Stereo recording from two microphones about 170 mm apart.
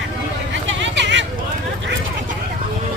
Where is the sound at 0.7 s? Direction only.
90° right.